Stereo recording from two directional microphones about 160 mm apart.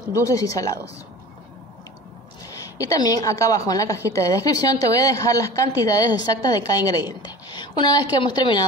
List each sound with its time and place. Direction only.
0.1 s a woman's voice: 20° left (ahead or behind)
2.4 s a woman's voice: 20° left (ahead or behind)